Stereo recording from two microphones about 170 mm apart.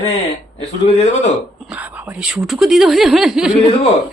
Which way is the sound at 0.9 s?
40° left (ahead or behind).